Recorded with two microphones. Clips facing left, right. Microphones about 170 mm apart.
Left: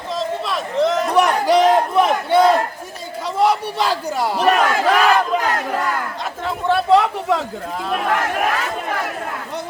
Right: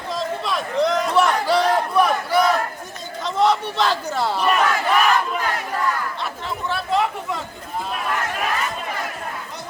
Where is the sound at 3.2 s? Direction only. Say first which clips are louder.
Left 1 dB; 10° left (ahead or behind).